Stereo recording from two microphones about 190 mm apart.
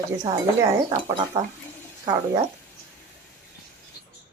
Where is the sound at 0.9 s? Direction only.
25° right (ahead or behind).